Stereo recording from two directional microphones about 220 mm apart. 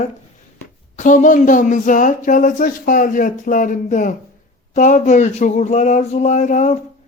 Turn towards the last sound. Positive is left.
turn(degrees=35)  # may be behind; listen again after turning